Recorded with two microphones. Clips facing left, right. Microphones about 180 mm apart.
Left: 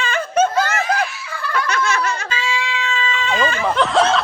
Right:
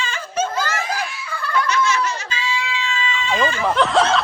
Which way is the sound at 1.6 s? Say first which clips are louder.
Left 1 dB; 55° left (ahead or behind).